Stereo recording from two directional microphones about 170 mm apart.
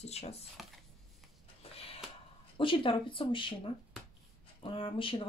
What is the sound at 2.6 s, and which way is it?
Speech, 30° left (ahead or behind).